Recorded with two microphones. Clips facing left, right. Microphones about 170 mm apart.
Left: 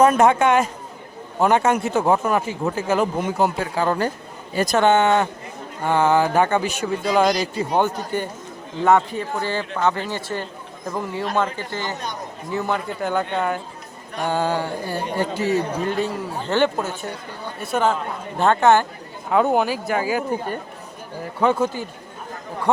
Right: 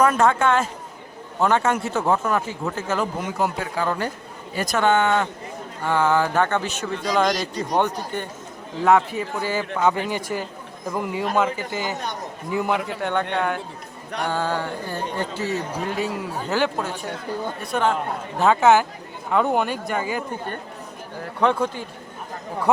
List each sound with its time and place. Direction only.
0.0 s speech: 20° left (ahead or behind)
3.3 s speech: 30° left (ahead or behind)
4.5 s a man's voice: 30° left (ahead or behind); by 12.8 s 15° right (ahead or behind)
13.0 s speech: centre (ahead or behind)
14.3 s speech: 15° left (ahead or behind)
16.0 s speech: 5° right (ahead or behind)